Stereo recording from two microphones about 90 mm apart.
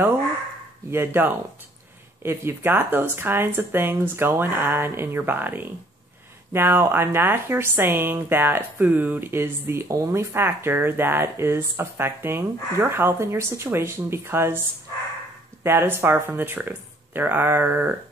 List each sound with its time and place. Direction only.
0.8 s speech: 25° right (ahead or behind)
15.6 s speech: 25° right (ahead or behind)